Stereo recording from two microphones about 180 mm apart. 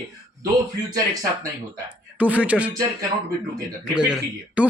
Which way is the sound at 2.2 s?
10° right (ahead or behind).